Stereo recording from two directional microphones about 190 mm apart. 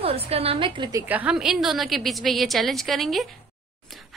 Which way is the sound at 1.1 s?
5° right (ahead or behind).